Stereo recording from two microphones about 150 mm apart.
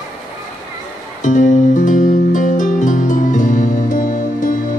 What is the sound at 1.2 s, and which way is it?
Music, 55° left (ahead or behind).